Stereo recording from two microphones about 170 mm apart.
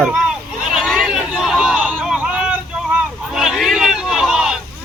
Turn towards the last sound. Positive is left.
turn(degrees=-5)  # may be behind; listen again after turning